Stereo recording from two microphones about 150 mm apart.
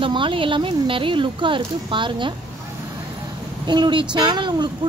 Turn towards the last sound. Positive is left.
turn(degrees=-30)  # may be behind; listen again after turning